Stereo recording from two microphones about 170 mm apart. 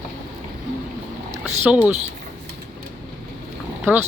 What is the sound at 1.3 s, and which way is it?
Speech, 10° right (ahead or behind).